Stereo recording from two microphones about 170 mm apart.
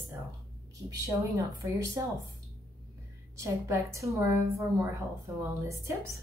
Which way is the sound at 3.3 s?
15° right (ahead or behind).